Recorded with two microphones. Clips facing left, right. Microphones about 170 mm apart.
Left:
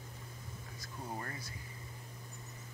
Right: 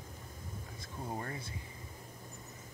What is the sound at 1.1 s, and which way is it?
Speech, 15° right (ahead or behind).